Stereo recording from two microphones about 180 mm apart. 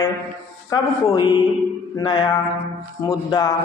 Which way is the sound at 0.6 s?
20° left (ahead or behind).